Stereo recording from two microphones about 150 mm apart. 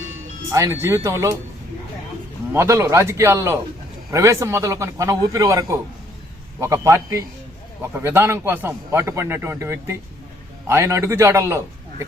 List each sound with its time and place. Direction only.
0.5 s a man's voice: 20° right (ahead or behind)
2.5 s a man's voice: 20° right (ahead or behind)